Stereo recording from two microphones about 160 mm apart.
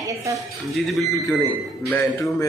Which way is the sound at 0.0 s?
20° right (ahead or behind).